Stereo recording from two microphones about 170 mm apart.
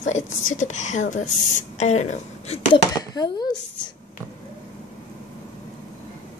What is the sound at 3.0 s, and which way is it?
Speech, 25° left (ahead or behind).